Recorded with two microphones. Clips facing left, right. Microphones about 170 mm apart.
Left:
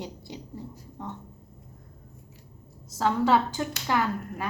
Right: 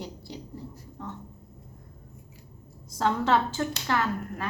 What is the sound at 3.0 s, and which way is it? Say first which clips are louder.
Speech: left 1 dB; 5° left (ahead or behind).